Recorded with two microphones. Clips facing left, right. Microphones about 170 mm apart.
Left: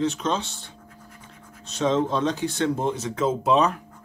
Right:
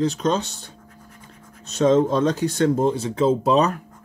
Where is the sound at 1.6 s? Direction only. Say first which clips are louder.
Right 6 dB; 45° right (ahead or behind).